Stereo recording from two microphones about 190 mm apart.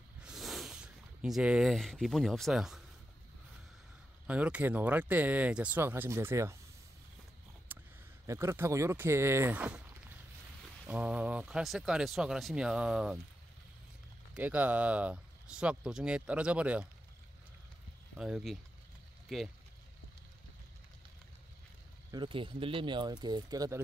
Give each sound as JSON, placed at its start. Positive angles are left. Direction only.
{"t": 0.2, "sound": "a sound", "side_deg": 0}
{"t": 4.3, "sound": "speech", "side_deg": -5}
{"t": 7.7, "sound": "a sound", "side_deg": -10}
{"t": 8.3, "sound": "speech", "side_deg": -15}
{"t": 14.3, "sound": "speech", "side_deg": -10}
{"t": 18.1, "sound": "speech", "side_deg": -5}
{"t": 22.1, "sound": "speech", "side_deg": -25}